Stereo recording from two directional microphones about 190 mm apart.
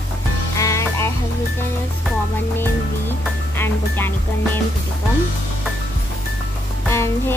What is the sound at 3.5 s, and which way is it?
Music, 10° left (ahead or behind).